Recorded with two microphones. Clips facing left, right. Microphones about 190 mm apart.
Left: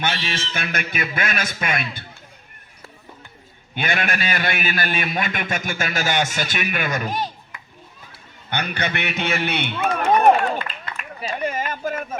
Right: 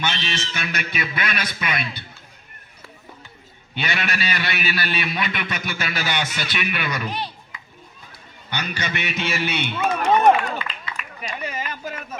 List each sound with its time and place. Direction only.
0.0 s a man's voice: 55° left (ahead or behind)
3.8 s a man's voice: 50° left (ahead or behind)
8.4 s a man's voice: 55° left (ahead or behind)
9.6 s speech: centre (ahead or behind)
10.4 s a sound: 50° left (ahead or behind)
11.3 s speech: 50° left (ahead or behind)